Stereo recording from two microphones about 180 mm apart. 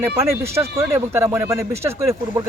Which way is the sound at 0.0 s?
15° right (ahead or behind).